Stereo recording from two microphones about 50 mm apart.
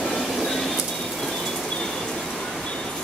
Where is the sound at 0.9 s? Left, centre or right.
Centre.